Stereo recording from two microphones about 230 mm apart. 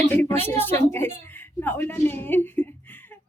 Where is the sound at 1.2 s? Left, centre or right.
Centre.